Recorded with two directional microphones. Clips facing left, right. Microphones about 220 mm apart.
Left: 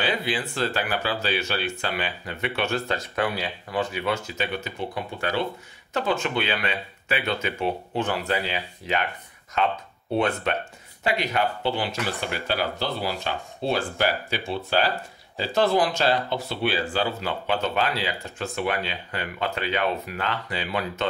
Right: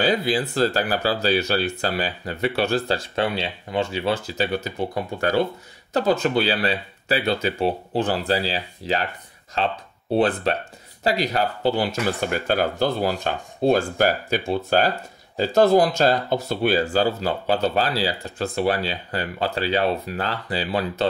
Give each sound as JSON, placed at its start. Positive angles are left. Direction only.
{"t": 0.0, "sound": "speech", "side_deg": -40}